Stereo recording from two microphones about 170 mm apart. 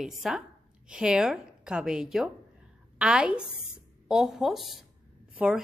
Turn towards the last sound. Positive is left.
turn(degrees=-5)  # may be behind; listen again after turning